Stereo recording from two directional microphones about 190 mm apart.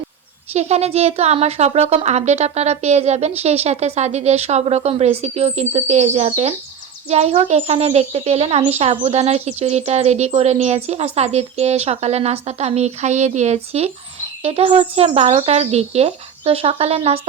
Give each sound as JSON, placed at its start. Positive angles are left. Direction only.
{"t": 0.5, "sound": "a child's voice", "side_deg": -35}